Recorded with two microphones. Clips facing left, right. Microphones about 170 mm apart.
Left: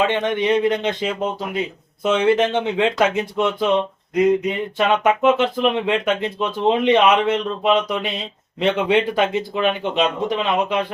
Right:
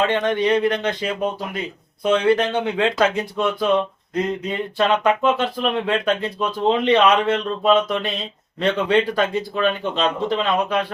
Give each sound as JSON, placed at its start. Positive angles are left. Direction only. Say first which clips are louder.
{"t": 0.1, "sound": "speech", "louder": "even", "side_deg": 15}
{"t": 2.2, "sound": "speech", "louder": "left 1 dB", "side_deg": 20}